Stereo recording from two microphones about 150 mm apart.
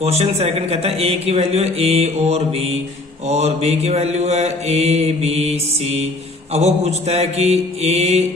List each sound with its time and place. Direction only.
0.0 s mantra: 45° right (ahead or behind)